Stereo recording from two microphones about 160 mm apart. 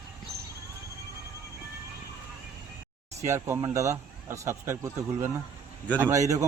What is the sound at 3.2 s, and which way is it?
Speech, 15° right (ahead or behind).